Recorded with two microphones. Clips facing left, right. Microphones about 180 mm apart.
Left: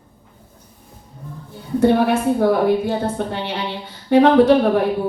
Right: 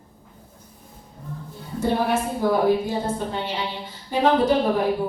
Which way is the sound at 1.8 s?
70° left (ahead or behind).